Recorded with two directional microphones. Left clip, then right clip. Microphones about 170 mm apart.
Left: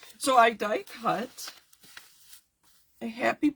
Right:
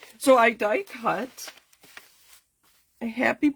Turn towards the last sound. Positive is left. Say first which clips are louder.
# right 3 dB
turn(degrees=-45)  # may be behind; listen again after turning